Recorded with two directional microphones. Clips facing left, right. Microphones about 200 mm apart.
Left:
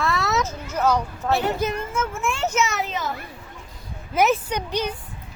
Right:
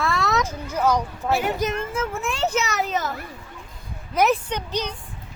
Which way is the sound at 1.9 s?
35° right (ahead or behind).